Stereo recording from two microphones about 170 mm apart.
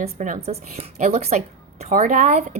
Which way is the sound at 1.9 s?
50° right (ahead or behind).